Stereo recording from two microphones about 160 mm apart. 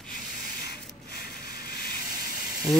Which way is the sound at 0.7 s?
75° left (ahead or behind).